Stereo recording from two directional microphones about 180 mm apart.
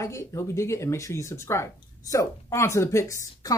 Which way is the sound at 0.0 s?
15° left (ahead or behind).